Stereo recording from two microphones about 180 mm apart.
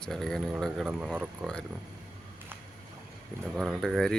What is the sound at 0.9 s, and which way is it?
Speech, 10° right (ahead or behind).